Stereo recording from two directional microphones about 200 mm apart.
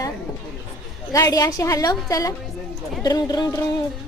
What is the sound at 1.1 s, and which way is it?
Speech, 15° left (ahead or behind).